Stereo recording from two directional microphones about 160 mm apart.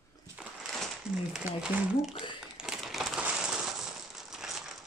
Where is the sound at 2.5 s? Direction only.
Centre (ahead or behind).